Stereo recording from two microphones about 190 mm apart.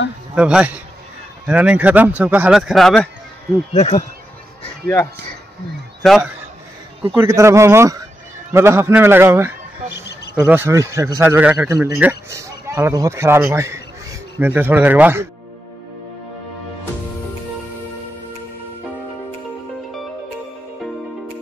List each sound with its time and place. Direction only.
0.3 s a man's voice: 5° right (ahead or behind)
3.7 s speech: 35° left (ahead or behind)
6.0 s a man's voice: centre (ahead or behind)
7.2 s a man's voice: 15° right (ahead or behind)